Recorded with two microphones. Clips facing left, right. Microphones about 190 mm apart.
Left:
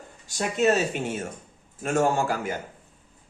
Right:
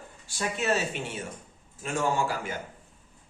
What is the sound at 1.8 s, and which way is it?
Speech, 45° left (ahead or behind).